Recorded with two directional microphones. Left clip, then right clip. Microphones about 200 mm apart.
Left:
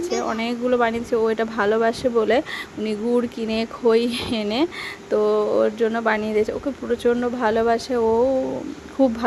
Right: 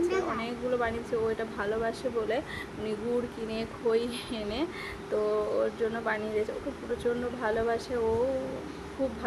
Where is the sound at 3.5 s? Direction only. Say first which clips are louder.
Left 10 dB; 50° left (ahead or behind).